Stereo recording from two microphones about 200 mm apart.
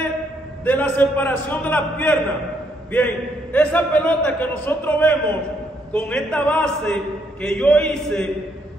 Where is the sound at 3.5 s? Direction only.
5° left (ahead or behind).